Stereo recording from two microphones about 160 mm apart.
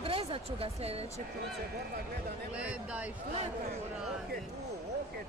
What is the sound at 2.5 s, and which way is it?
Speech, 10° right (ahead or behind).